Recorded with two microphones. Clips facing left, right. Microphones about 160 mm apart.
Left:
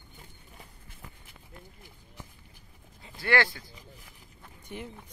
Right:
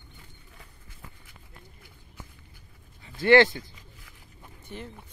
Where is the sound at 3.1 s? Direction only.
25° right (ahead or behind).